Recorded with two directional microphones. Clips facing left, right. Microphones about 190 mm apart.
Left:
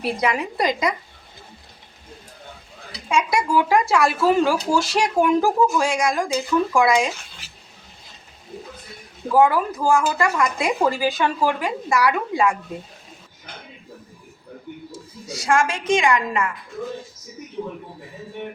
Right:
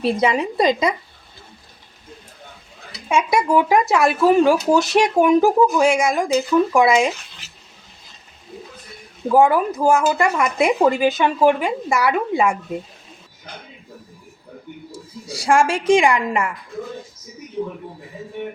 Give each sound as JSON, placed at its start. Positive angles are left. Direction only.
{"t": 0.0, "sound": "speech", "side_deg": -25}
{"t": 3.1, "sound": "speech", "side_deg": -25}
{"t": 9.3, "sound": "speech", "side_deg": -25}
{"t": 15.3, "sound": "a woman's voice", "side_deg": -30}